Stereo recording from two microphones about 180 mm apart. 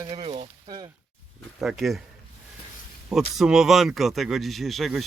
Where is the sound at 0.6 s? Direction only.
20° right (ahead or behind).